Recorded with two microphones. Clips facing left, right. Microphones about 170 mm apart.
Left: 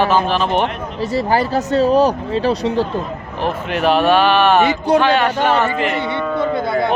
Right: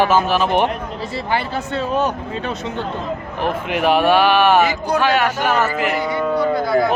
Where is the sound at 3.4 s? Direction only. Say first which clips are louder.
Left 1 dB; 15° right (ahead or behind).